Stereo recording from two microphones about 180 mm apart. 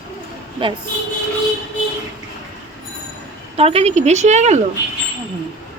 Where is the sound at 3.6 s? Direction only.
35° right (ahead or behind).